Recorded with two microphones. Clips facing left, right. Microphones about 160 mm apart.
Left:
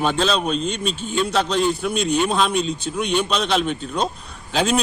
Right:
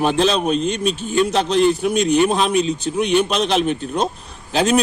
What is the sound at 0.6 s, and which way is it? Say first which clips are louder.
A man's voice: right 4 dB; 55° right (ahead or behind).